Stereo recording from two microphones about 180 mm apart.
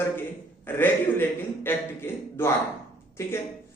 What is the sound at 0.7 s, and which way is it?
Speech, 10° left (ahead or behind).